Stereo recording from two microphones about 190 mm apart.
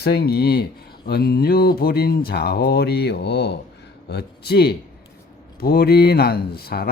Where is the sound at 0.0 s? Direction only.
55° left (ahead or behind).